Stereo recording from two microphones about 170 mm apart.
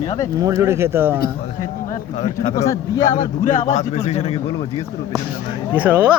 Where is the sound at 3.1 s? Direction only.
45° left (ahead or behind).